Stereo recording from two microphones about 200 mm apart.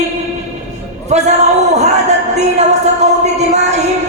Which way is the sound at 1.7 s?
35° right (ahead or behind).